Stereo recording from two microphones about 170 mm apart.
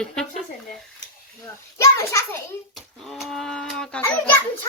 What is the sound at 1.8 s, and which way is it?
Speech, 15° left (ahead or behind).